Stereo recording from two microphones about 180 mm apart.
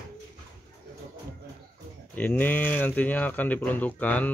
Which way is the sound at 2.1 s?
10° left (ahead or behind).